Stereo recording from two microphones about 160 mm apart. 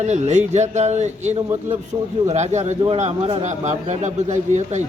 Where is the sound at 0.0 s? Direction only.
45° right (ahead or behind).